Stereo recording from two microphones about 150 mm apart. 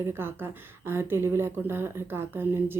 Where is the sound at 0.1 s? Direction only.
15° right (ahead or behind).